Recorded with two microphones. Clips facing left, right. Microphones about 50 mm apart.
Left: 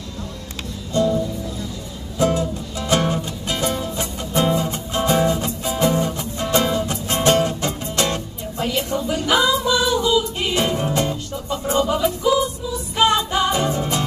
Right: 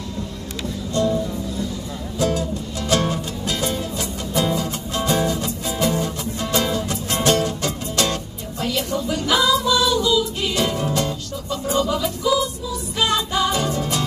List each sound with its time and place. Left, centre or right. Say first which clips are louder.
2.1 s music: left 2 dB; left